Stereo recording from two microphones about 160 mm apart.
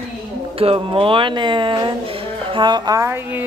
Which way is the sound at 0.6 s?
35° right (ahead or behind).